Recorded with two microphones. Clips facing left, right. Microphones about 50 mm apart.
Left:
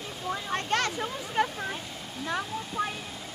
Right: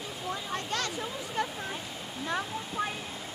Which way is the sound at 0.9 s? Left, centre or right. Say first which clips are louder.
Left 4 dB; left.